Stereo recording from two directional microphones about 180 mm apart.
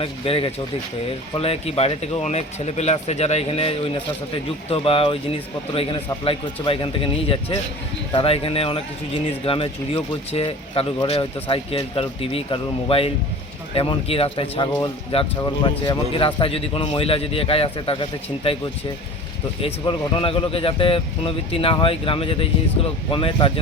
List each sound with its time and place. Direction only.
0.0 s speech: 30° left (ahead or behind)
19.8 s speech: 25° left (ahead or behind)